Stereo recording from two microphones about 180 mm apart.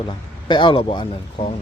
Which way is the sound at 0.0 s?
25° left (ahead or behind).